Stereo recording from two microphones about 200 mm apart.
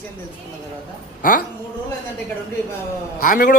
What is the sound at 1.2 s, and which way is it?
Speech, 45° left (ahead or behind).